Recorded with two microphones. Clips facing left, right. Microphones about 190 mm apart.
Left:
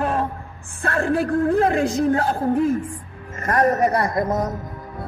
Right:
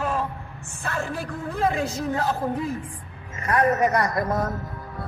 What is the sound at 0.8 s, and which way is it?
A woman's voice, 60° left (ahead or behind).